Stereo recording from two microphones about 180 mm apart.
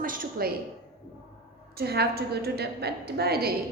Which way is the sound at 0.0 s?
50° right (ahead or behind).